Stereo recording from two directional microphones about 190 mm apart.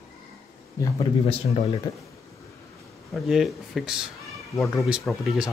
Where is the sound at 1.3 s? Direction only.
30° left (ahead or behind).